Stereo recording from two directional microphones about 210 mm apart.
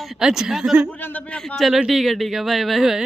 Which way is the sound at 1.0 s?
10° left (ahead or behind).